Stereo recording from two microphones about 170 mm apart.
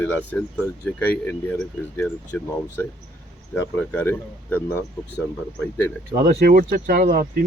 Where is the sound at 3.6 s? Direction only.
10° left (ahead or behind).